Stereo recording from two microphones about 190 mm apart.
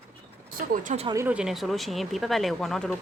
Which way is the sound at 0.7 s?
45° right (ahead or behind).